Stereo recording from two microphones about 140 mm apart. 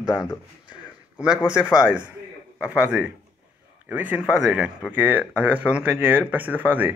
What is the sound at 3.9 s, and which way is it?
Speech, 10° right (ahead or behind).